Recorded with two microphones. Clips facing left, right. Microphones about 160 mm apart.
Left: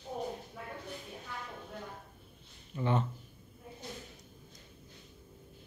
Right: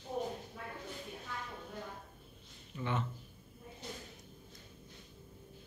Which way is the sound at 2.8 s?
35° left (ahead or behind).